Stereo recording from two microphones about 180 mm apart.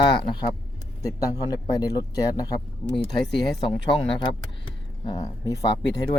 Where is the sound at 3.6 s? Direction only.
30° left (ahead or behind).